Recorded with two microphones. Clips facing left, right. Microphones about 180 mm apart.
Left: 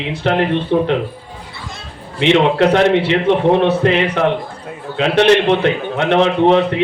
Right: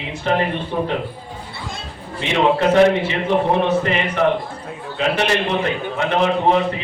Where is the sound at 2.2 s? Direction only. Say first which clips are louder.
Left 5 dB; 75° left (ahead or behind).